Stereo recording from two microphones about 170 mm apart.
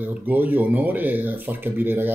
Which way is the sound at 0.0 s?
10° right (ahead or behind).